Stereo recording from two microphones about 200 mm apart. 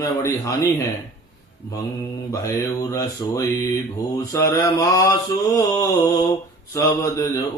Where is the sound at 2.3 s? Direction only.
15° left (ahead or behind).